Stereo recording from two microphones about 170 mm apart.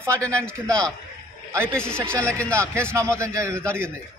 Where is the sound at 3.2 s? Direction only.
15° right (ahead or behind).